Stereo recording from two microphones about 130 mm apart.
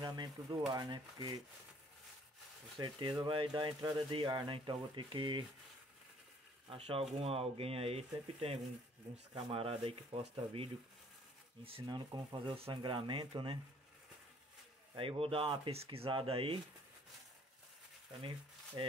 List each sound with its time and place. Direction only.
0.0 s speech: 35° right (ahead or behind)
2.8 s speech: 35° right (ahead or behind)
6.7 s speech: 45° right (ahead or behind)
11.8 s speech: 30° right (ahead or behind)
12.4 s speech: 45° right (ahead or behind)
15.0 s speech: 45° right (ahead or behind)
18.8 s speech: 35° right (ahead or behind)